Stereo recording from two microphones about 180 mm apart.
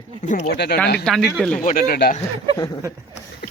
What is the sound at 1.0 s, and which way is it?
Speech, centre (ahead or behind).